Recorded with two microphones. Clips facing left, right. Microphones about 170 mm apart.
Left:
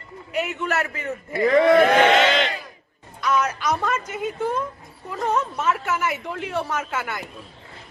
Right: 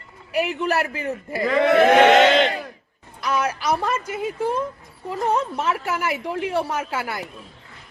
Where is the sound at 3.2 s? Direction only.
35° right (ahead or behind).